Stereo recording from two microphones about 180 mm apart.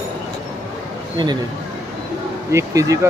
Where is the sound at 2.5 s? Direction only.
15° right (ahead or behind).